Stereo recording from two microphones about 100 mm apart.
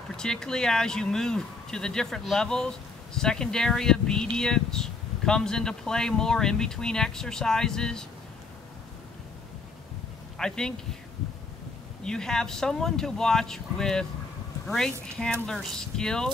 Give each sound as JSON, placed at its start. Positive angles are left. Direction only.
{"t": 0.1, "sound": "speech", "side_deg": 5}
{"t": 10.3, "sound": "speech", "side_deg": 5}
{"t": 12.0, "sound": "speech", "side_deg": 5}